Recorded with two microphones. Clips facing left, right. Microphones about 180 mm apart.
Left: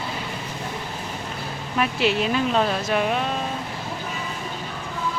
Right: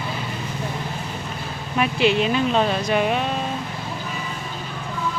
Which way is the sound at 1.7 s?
Centre (ahead or behind).